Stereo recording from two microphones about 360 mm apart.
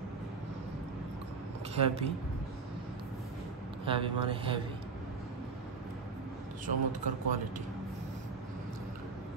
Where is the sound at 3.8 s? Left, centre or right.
Centre.